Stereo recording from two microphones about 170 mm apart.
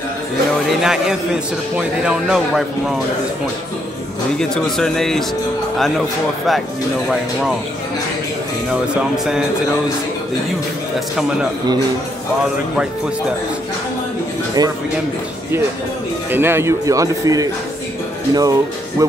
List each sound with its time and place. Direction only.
0.8 s a man's voice: 5° right (ahead or behind)
4.4 s a man's voice: 5° left (ahead or behind)
8.9 s a man's voice: 5° right (ahead or behind)
14.6 s a man's voice: 20° right (ahead or behind)
16.3 s a man's voice: 15° right (ahead or behind)